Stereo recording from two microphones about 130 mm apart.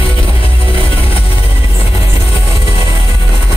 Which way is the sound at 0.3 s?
45° left (ahead or behind).